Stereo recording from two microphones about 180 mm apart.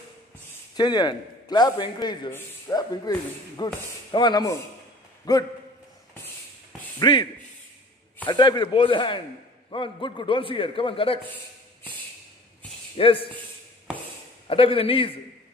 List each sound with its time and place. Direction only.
0.7 s speech: 25° left (ahead or behind)
7.0 s speech: 25° left (ahead or behind)
8.3 s speech: 25° left (ahead or behind)
12.9 s a man's voice: 30° left (ahead or behind)
14.5 s a man's voice: 30° left (ahead or behind)